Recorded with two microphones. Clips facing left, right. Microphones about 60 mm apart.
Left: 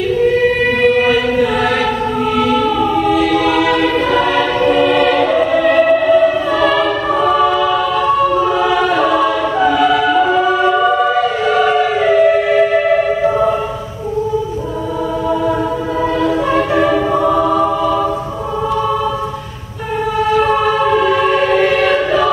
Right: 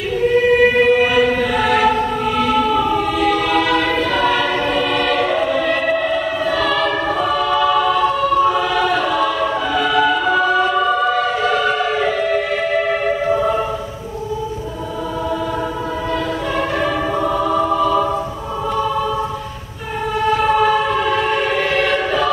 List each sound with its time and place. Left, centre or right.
0.8 s choir: centre
3.1 s choir: centre
7.3 s choir: centre
16.5 s music: centre
20.9 s choir: centre